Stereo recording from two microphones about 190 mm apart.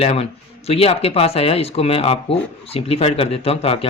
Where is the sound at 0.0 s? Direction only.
30° left (ahead or behind).